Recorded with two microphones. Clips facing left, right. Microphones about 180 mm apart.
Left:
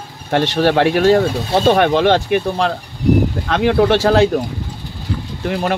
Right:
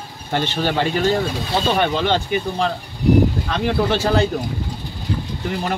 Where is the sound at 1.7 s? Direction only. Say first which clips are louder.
Left 7 dB; 65° left (ahead or behind); by 4.3 s 85° left.